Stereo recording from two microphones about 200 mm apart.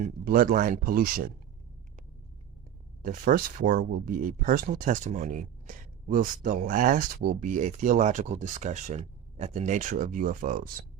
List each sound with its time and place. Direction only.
0.0 s speech: 45° right (ahead or behind)
3.0 s speech: 45° right (ahead or behind)